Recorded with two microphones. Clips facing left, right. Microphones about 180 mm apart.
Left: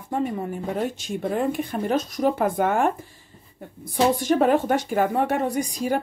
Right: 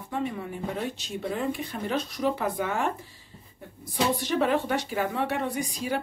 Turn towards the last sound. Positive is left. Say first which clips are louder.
# left 6 dB
turn(degrees=45)  # may be behind; listen again after turning